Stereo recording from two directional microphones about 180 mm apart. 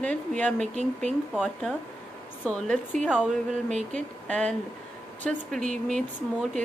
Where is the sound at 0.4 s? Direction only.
5° left (ahead or behind).